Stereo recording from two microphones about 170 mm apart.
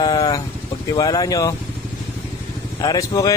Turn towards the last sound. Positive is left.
turn(degrees=20)  # may be behind; listen again after turning